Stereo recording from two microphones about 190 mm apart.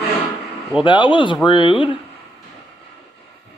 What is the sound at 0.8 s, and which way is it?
Speech, 25° left (ahead or behind).